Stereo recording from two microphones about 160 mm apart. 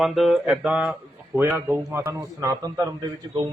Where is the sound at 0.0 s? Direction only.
Centre (ahead or behind).